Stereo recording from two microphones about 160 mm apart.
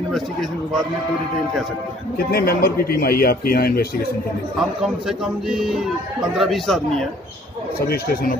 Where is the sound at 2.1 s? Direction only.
70° left (ahead or behind).